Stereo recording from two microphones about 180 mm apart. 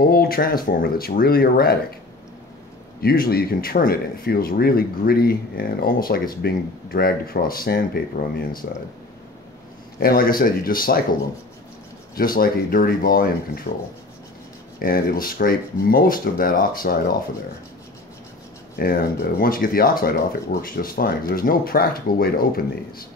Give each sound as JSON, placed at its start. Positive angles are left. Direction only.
{"t": 0.1, "sound": "speech", "side_deg": 55}
{"t": 3.0, "sound": "speech", "side_deg": 55}
{"t": 9.9, "sound": "speech", "side_deg": 55}
{"t": 12.2, "sound": "speech", "side_deg": 55}
{"t": 14.8, "sound": "speech", "side_deg": 55}
{"t": 18.8, "sound": "speech", "side_deg": 55}